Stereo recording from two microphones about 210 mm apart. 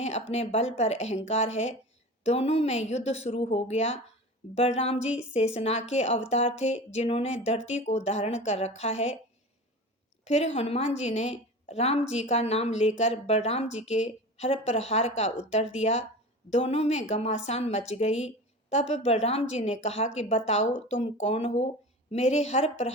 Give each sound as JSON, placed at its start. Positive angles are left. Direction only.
{"t": 0.0, "sound": "a woman's voice", "side_deg": 30}
{"t": 10.2, "sound": "a woman's voice", "side_deg": 30}